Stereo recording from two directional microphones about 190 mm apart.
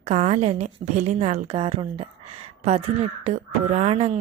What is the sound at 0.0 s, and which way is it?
A woman's voice, 35° right (ahead or behind).